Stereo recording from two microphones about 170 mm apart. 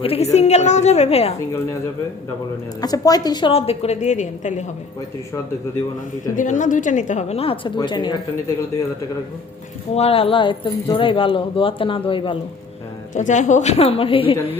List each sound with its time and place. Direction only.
0.0 s a woman's voice: 35° left (ahead or behind)
2.8 s a woman's voice: 20° left (ahead or behind); by 4.6 s 45° left (ahead or behind)
6.3 s a woman's voice: 50° left (ahead or behind); by 8.5 s 25° left (ahead or behind)
9.9 s a woman's voice: 35° left (ahead or behind)
13.1 s a woman's voice: 45° left (ahead or behind)